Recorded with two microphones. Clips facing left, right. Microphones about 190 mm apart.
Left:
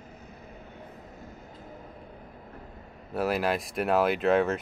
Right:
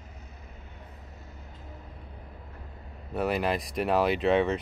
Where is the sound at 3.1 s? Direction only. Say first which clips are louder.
Left 1 dB; centre (ahead or behind).